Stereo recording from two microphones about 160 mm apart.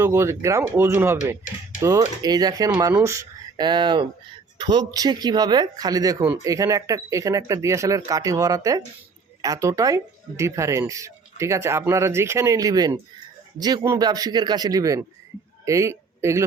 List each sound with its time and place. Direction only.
0.0 s a man's voice: 15° right (ahead or behind)